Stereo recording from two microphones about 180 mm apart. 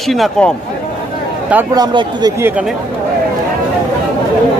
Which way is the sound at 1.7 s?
25° right (ahead or behind).